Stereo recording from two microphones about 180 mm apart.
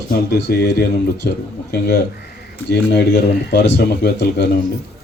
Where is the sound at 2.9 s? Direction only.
75° left (ahead or behind).